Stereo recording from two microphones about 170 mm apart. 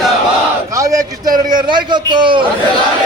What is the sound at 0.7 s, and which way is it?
A man's voice, 20° right (ahead or behind).